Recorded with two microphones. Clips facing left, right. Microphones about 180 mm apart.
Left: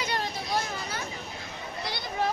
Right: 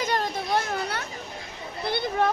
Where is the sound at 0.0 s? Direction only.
45° right (ahead or behind).